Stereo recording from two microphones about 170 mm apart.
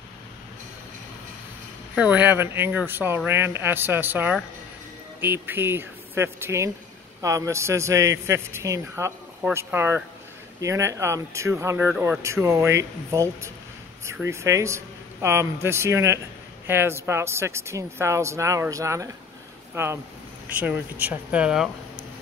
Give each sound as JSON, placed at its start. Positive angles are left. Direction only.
{"t": 2.0, "sound": "speech", "side_deg": -10}